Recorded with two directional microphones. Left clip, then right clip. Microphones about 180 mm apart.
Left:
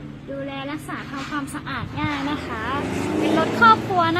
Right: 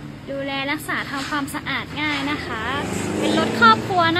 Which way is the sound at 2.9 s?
50° left (ahead or behind).